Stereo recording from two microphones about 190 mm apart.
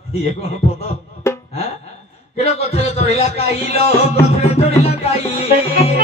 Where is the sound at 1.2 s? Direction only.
15° left (ahead or behind).